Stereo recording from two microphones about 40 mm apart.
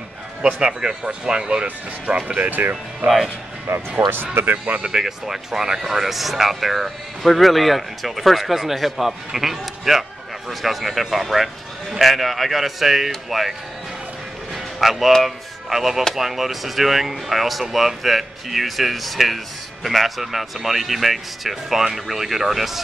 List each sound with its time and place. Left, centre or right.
0.6 s speech: centre
2.3 s speech: right
4.8 s speech: centre
14.5 s music: centre
15.2 s speech: centre